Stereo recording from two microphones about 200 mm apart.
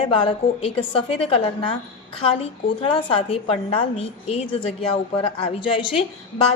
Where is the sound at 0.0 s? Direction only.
25° left (ahead or behind).